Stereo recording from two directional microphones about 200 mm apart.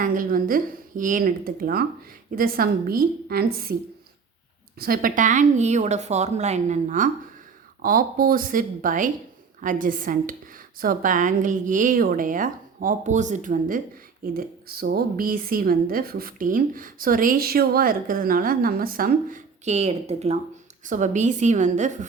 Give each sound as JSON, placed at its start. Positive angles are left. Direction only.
{"t": 0.0, "sound": "a woman's voice", "side_deg": -45}
{"t": 4.8, "sound": "a woman's voice", "side_deg": -45}